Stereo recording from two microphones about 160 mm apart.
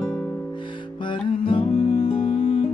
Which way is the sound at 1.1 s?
35° left (ahead or behind).